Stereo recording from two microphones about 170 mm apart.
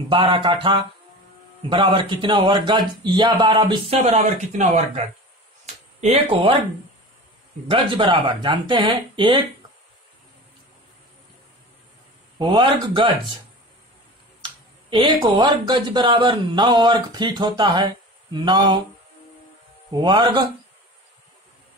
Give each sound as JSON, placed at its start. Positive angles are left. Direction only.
{"t": 0.1, "sound": "speech", "side_deg": -30}
{"t": 7.6, "sound": "speech", "side_deg": -30}
{"t": 12.4, "sound": "speech", "side_deg": -25}
{"t": 14.4, "sound": "speech", "side_deg": -30}
{"t": 19.9, "sound": "speech", "side_deg": -25}